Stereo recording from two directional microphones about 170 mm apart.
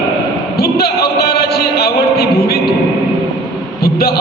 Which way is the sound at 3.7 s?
65° left (ahead or behind).